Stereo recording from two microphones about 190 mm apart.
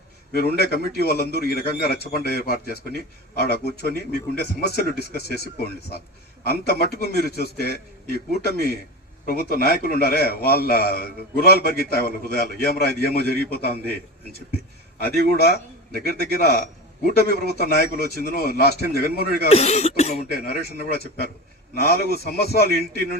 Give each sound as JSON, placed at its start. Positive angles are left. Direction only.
{"t": 0.3, "sound": "a man's voice", "side_deg": 55}
{"t": 15.0, "sound": "a man's voice", "side_deg": 55}
{"t": 19.5, "sound": "speech", "side_deg": 35}
{"t": 20.7, "sound": "a man's voice", "side_deg": 55}